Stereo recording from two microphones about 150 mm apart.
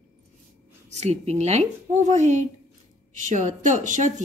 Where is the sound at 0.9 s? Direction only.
45° right (ahead or behind).